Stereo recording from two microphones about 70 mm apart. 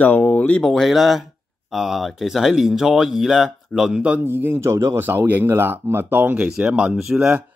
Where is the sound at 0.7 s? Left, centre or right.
Centre.